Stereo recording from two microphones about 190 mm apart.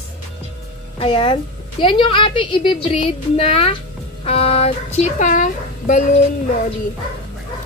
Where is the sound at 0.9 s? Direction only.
30° left (ahead or behind).